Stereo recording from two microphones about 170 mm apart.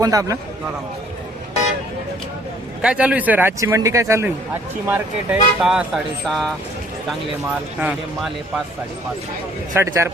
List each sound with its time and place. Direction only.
0.0 s a man's voice: 20° right (ahead or behind)
2.8 s a man's voice: 5° right (ahead or behind)
7.8 s speech: 5° right (ahead or behind)
9.7 s a man's voice: 15° right (ahead or behind)